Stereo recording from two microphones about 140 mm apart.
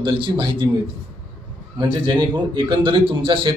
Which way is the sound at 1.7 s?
30° right (ahead or behind).